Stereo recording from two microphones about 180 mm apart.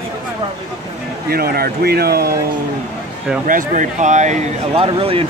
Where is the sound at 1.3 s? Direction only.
55° right (ahead or behind).